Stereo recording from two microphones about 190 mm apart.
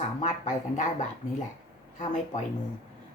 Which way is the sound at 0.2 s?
40° left (ahead or behind).